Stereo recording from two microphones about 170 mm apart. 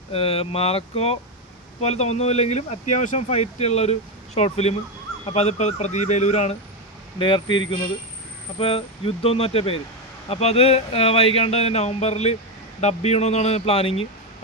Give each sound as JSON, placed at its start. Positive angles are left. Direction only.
{"t": 0.1, "sound": "speech", "side_deg": 35}
{"t": 7.2, "sound": "speech", "side_deg": 30}